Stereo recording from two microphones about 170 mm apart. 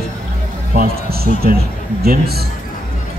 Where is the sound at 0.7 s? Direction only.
65° right (ahead or behind).